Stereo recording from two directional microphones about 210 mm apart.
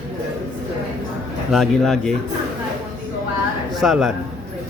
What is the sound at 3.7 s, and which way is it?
Speech, centre (ahead or behind).